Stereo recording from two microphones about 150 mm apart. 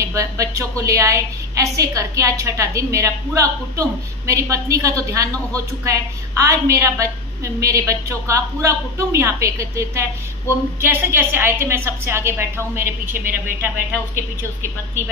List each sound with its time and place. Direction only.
0.0 s a woman's voice: 20° right (ahead or behind)